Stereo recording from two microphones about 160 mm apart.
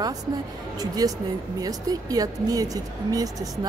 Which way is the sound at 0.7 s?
25° right (ahead or behind).